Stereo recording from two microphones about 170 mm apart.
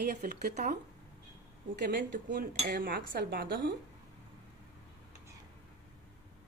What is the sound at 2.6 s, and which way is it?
Speech, 60° right (ahead or behind).